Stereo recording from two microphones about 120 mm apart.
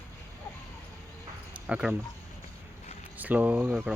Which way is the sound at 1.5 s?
10° right (ahead or behind).